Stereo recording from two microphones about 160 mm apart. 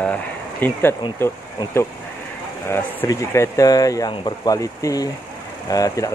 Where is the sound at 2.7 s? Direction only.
20° left (ahead or behind).